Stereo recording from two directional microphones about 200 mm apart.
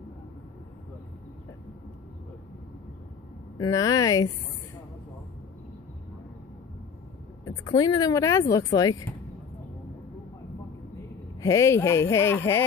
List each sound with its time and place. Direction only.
3.5 s speech: 15° left (ahead or behind)
7.4 s speech: 20° left (ahead or behind)
11.4 s speech: 15° left (ahead or behind)